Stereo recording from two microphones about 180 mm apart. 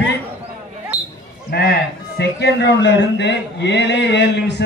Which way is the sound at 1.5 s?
60° left (ahead or behind).